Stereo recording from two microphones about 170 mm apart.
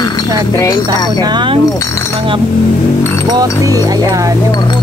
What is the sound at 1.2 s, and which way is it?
Speech, 25° right (ahead or behind).